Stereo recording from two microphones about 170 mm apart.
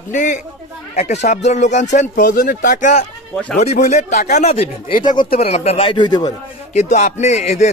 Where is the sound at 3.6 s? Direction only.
40° left (ahead or behind); by 6.3 s 25° left (ahead or behind).